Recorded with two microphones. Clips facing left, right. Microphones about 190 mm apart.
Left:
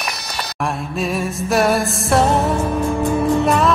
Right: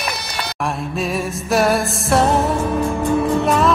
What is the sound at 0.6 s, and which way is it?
Music, centre (ahead or behind).